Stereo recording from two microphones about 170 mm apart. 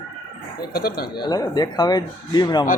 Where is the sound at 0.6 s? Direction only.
65° left (ahead or behind).